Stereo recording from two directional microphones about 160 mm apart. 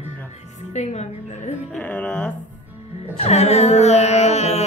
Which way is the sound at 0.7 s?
45° left (ahead or behind).